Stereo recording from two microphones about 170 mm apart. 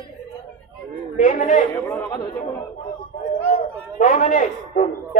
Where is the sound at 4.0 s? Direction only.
50° left (ahead or behind).